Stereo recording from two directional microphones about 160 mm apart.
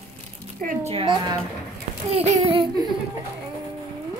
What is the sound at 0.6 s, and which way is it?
Speech, 55° right (ahead or behind).